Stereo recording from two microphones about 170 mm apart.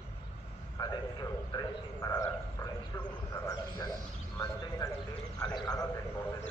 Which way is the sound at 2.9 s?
20° left (ahead or behind).